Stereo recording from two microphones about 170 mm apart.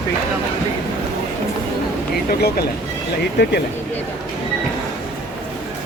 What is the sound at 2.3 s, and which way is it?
Speech, 65° left (ahead or behind).